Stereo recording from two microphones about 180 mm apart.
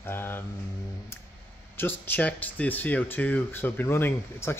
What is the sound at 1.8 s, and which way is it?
Speech, 10° left (ahead or behind).